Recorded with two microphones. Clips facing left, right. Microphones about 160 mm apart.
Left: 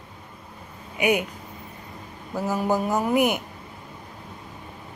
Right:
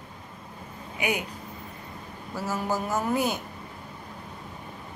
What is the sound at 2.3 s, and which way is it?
A woman's voice, 15° left (ahead or behind).